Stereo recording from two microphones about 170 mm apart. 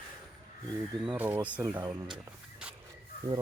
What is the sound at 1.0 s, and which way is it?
Speech, 10° right (ahead or behind).